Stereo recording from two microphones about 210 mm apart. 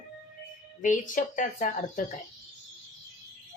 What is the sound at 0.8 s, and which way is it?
Speech, 40° left (ahead or behind).